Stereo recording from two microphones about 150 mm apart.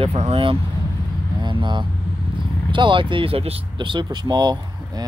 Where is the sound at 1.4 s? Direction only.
30° right (ahead or behind).